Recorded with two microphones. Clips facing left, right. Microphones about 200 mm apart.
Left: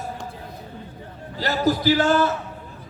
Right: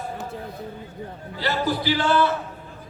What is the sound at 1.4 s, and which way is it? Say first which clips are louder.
Speech: left 3 dB; 45° left (ahead or behind).